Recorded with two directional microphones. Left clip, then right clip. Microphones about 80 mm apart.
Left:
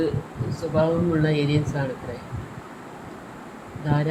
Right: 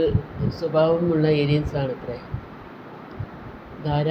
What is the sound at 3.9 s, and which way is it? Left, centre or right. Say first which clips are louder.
Speech: right 1 dB; right.